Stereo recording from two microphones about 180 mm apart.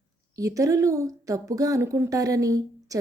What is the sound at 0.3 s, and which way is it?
A woman's voice, 20° right (ahead or behind).